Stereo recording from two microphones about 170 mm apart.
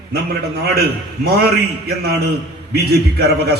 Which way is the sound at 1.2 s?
65° right (ahead or behind).